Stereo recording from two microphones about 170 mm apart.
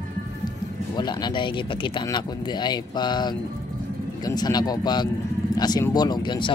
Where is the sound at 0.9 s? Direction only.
25° left (ahead or behind).